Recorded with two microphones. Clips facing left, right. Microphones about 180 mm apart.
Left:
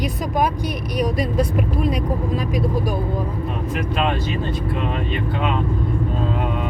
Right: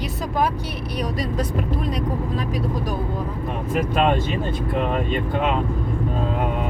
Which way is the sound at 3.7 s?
45° right (ahead or behind).